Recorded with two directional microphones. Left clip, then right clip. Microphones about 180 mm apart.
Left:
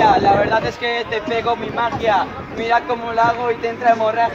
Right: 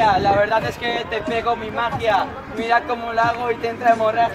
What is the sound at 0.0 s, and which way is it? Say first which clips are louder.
A man's voice: left 3 dB; 15° right (ahead or behind).